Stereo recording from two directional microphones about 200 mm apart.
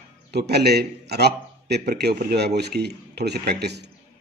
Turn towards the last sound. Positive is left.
turn(degrees=-55)  # may be behind; listen again after turning